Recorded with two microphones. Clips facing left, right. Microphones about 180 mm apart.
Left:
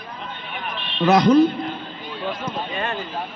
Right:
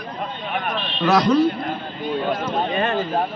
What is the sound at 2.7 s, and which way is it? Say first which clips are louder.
Speech: right 6 dB; 45° right (ahead or behind).